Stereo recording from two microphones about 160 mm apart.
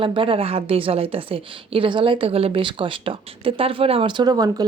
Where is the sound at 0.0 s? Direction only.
35° right (ahead or behind).